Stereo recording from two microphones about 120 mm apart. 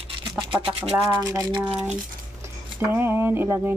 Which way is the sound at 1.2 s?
25° right (ahead or behind).